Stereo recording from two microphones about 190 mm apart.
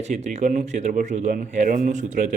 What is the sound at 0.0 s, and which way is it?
A man's voice, 35° right (ahead or behind).